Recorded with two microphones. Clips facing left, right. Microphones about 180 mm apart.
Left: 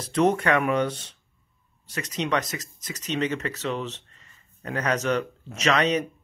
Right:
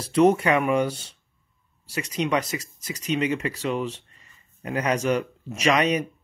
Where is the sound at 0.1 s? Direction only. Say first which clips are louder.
Right 3 dB; 10° right (ahead or behind).